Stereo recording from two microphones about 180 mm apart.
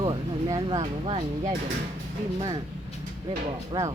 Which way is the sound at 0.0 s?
25° right (ahead or behind).